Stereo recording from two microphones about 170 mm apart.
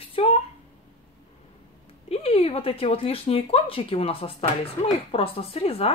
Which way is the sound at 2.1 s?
35° left (ahead or behind).